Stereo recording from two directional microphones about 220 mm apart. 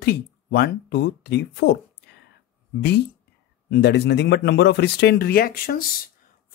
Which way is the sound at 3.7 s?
50° left (ahead or behind).